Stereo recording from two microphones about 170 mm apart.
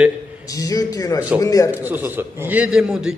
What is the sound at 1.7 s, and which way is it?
A man's voice, 10° right (ahead or behind).